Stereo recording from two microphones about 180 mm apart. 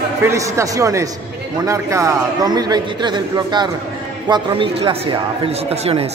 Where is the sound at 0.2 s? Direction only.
15° right (ahead or behind); by 6.0 s 35° right (ahead or behind).